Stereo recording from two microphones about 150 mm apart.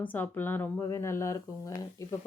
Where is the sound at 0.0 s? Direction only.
10° left (ahead or behind).